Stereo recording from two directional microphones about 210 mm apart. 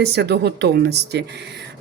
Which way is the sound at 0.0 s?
50° right (ahead or behind).